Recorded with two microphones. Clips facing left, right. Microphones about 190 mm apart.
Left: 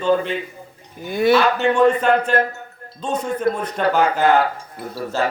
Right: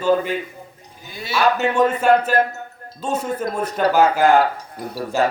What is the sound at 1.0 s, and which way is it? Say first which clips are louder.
Speech: left 16 dB; 55° left (ahead or behind).